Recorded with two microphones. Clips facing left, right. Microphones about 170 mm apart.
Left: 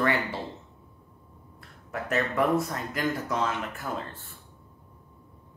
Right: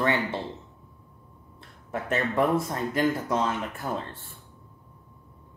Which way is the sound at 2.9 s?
25° right (ahead or behind).